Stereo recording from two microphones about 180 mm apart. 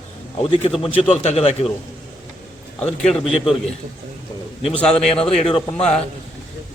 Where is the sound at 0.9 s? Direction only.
35° left (ahead or behind).